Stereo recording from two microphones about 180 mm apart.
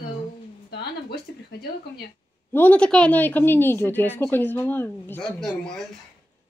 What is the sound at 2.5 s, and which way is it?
A woman's voice, 10° left (ahead or behind).